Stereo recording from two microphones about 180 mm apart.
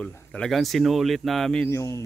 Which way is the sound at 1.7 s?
15° left (ahead or behind).